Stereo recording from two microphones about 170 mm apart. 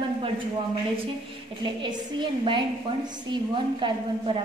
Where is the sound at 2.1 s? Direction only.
30° right (ahead or behind).